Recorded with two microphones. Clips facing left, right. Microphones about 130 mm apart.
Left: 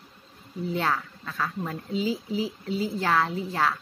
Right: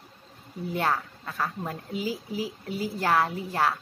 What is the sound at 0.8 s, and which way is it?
Speech, 15° right (ahead or behind).